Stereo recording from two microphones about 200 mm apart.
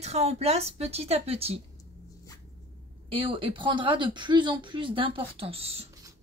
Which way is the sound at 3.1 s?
25° right (ahead or behind).